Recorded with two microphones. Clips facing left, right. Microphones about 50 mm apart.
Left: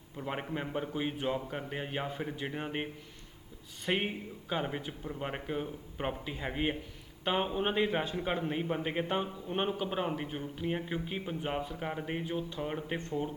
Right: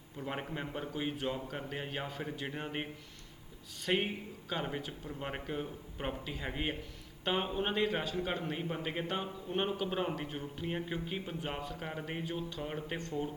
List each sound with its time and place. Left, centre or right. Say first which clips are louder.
0.2 s a man's voice: left 3 dB; centre
3.8 s a man's voice: left 1 dB; centre